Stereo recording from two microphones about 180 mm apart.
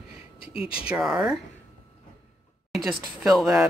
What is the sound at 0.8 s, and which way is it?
Speech, 5° right (ahead or behind).